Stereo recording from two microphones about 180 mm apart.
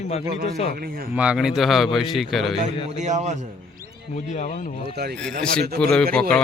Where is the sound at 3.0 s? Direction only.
40° right (ahead or behind).